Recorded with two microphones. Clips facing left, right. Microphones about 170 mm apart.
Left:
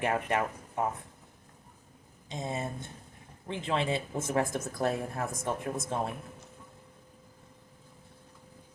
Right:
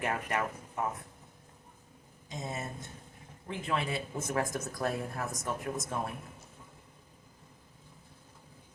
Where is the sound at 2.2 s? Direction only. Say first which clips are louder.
Left 4 dB; 25° left (ahead or behind).